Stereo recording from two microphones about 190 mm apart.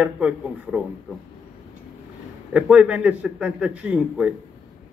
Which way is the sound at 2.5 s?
5° right (ahead or behind).